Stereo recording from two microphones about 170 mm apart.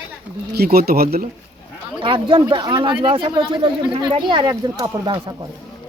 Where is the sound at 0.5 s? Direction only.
65° right (ahead or behind).